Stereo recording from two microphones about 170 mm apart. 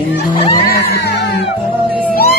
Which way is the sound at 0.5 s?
60° left (ahead or behind).